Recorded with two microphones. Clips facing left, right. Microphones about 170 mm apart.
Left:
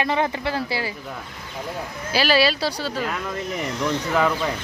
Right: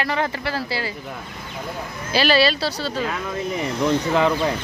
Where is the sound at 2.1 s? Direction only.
10° left (ahead or behind).